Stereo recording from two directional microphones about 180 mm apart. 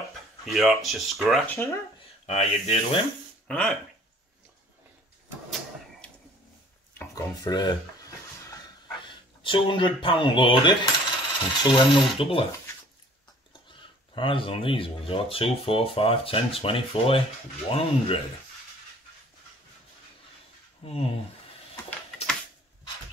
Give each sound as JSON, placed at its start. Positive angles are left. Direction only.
{"t": 0.5, "sound": "speech", "side_deg": 0}
{"t": 1.5, "sound": "speech", "side_deg": 15}
{"t": 2.2, "sound": "speech", "side_deg": 35}
{"t": 3.4, "sound": "speech", "side_deg": 5}
{"t": 7.0, "sound": "a sound", "side_deg": 20}
{"t": 9.0, "sound": "speech", "side_deg": 25}
{"t": 13.7, "sound": "speech", "side_deg": 30}
{"t": 20.8, "sound": "speech", "side_deg": 35}